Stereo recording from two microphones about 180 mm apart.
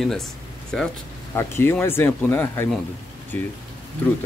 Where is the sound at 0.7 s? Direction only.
5° left (ahead or behind).